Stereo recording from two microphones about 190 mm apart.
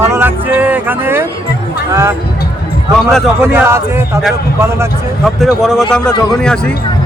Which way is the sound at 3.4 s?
10° right (ahead or behind).